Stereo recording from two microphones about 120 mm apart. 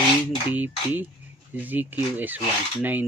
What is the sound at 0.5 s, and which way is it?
Speech, 15° right (ahead or behind).